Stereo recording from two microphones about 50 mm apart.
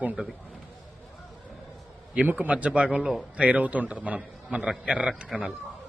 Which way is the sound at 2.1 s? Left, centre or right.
Right.